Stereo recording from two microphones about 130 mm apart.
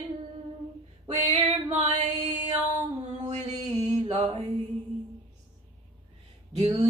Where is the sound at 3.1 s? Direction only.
60° right (ahead or behind).